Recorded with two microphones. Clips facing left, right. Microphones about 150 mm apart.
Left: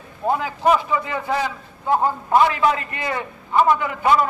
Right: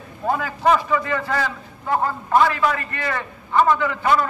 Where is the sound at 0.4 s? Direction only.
15° left (ahead or behind).